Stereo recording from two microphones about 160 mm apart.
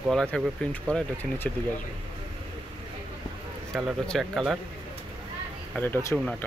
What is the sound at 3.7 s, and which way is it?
Speech, centre (ahead or behind).